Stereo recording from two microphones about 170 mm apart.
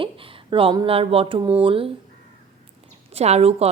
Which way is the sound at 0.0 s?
30° right (ahead or behind).